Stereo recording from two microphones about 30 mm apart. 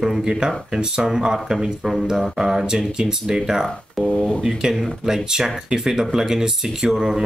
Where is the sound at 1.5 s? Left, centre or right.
Centre.